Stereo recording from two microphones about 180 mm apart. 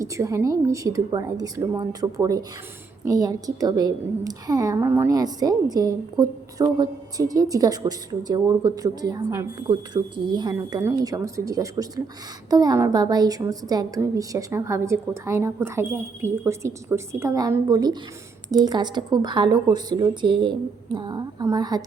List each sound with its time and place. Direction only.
0.0 s a woman's voice: 15° right (ahead or behind)